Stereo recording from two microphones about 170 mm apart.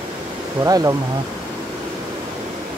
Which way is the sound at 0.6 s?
20° right (ahead or behind).